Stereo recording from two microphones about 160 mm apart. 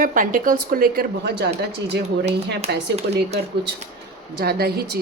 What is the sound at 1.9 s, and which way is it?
Speech, 90° right.